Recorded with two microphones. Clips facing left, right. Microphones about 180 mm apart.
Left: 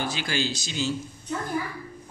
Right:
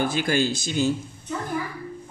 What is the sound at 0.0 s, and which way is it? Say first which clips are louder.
Speech: right 6 dB; 55° right (ahead or behind).